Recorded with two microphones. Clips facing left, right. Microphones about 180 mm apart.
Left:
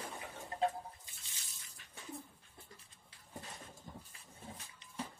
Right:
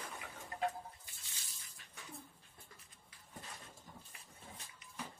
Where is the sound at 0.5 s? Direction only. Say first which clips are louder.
Left 4 dB; 30° left (ahead or behind).